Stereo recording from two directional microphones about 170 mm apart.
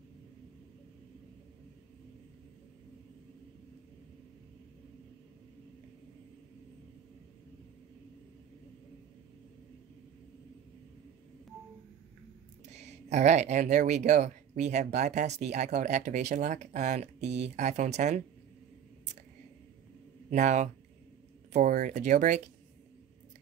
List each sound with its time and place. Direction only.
12.7 s speech: 40° right (ahead or behind)
20.2 s speech: 45° right (ahead or behind)